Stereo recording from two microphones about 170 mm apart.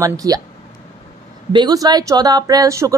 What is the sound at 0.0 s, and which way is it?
Speech, 20° right (ahead or behind).